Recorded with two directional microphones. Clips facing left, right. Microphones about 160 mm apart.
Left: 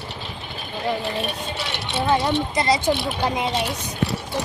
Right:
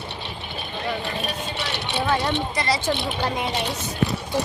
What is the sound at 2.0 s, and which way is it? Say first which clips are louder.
A woman's voice: left 3 dB; 20° left (ahead or behind).